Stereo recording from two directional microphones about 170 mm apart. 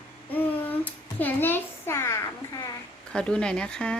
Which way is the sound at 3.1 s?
5° left (ahead or behind).